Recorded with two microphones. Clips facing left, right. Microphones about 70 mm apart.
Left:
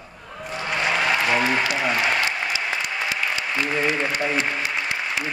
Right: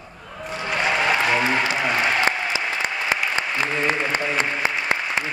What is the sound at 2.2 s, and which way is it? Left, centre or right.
Applause, right.